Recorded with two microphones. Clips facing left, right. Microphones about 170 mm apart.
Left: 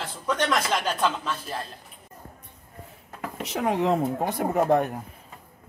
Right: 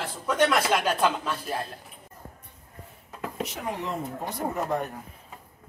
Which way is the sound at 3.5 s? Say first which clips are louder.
Left 9 dB; 90° left.